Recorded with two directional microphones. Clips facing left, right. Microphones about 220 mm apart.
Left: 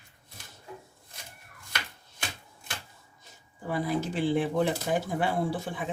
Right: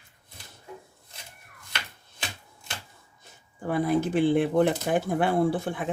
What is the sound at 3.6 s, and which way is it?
Speech, 55° right (ahead or behind).